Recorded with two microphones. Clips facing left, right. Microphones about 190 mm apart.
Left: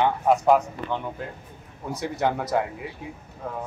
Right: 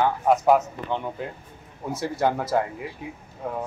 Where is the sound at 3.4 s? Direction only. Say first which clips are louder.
Right 3 dB; 10° right (ahead or behind).